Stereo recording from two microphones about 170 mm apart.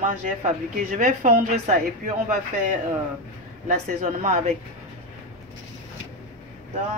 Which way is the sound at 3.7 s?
40° right (ahead or behind).